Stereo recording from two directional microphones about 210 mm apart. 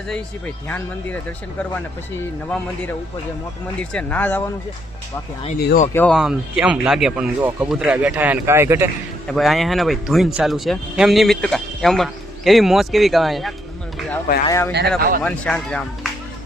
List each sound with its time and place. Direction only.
3.9 s speech: 10° left (ahead or behind)
5.5 s speech: 50° left (ahead or behind)
5.9 s speech: 5° left (ahead or behind); by 8.9 s 10° right (ahead or behind)
9.2 s speech: centre (ahead or behind)
14.4 s speech: 15° left (ahead or behind)
14.9 s speech: 40° right (ahead or behind)
15.2 s speech: 5° left (ahead or behind)